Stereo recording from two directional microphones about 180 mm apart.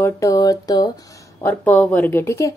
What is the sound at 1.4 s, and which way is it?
A woman's voice, 10° left (ahead or behind).